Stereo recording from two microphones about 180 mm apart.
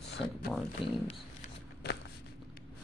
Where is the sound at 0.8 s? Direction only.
30° left (ahead or behind).